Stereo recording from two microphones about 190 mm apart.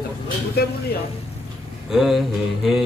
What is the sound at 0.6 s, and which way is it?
Speech, 55° left (ahead or behind).